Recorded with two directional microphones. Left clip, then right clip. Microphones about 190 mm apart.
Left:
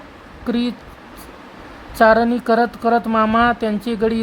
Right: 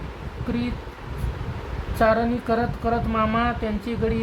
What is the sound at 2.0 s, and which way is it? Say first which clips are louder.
Speech: left 7 dB; 40° left (ahead or behind).